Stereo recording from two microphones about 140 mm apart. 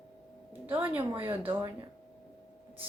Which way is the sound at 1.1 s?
15° right (ahead or behind).